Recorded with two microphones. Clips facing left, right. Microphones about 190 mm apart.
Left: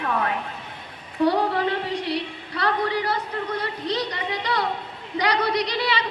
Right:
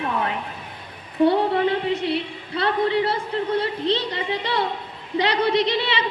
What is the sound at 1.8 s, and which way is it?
A woman's voice, 25° right (ahead or behind).